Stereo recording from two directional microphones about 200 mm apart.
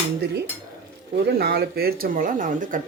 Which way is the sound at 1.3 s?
55° right (ahead or behind).